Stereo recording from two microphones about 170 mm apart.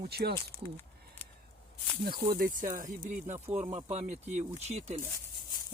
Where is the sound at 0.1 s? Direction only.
70° right (ahead or behind).